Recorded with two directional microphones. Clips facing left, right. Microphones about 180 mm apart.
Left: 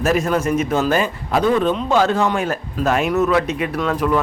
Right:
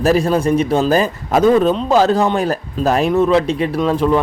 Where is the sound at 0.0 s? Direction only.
35° right (ahead or behind).